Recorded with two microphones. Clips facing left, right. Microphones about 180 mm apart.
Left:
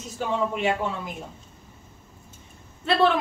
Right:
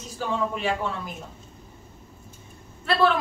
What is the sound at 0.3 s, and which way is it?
Speech, 20° left (ahead or behind).